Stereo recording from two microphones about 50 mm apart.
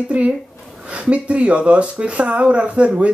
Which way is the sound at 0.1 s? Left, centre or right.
Right.